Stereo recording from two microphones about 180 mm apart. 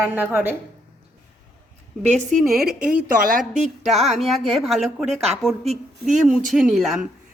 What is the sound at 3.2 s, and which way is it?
Speech, 50° right (ahead or behind).